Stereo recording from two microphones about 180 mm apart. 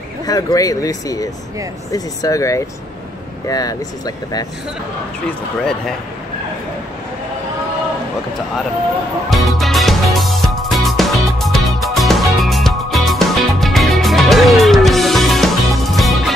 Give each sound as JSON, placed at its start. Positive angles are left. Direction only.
{"t": 0.3, "sound": "speech", "side_deg": 20}
{"t": 9.3, "sound": "music", "side_deg": 0}